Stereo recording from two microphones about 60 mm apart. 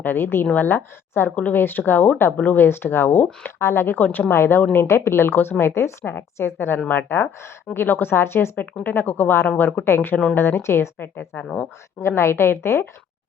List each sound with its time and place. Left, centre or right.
0.0 s speech: left
4.4 s a woman's voice: left
6.7 s a woman's voice: left